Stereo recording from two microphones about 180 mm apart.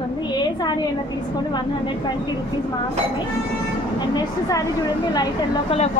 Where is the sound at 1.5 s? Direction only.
25° left (ahead or behind).